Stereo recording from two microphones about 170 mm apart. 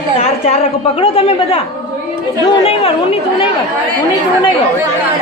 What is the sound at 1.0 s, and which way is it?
Speech, 35° left (ahead or behind).